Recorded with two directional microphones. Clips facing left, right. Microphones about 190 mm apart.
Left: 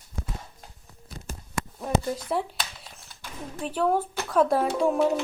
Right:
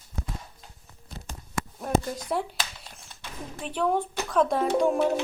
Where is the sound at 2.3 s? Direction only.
Centre (ahead or behind).